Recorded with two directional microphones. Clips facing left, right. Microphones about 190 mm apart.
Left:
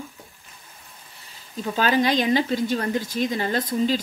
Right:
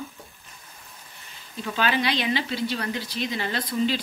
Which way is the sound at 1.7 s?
40° left (ahead or behind).